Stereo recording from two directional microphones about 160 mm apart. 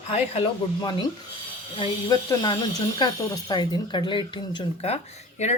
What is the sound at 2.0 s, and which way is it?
Speech, 25° left (ahead or behind).